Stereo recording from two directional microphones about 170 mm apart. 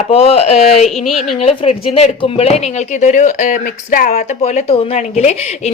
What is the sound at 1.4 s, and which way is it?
Speech, 35° left (ahead or behind).